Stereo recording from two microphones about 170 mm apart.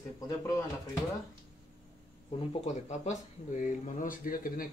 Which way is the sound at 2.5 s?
45° left (ahead or behind).